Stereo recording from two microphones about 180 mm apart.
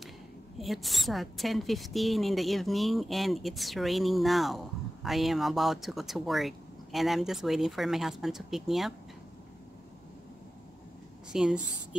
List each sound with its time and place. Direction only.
0.6 s a woman's voice: centre (ahead or behind)
11.3 s a woman's voice: 5° right (ahead or behind)